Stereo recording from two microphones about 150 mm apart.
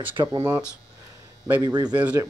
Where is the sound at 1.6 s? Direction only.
30° right (ahead or behind).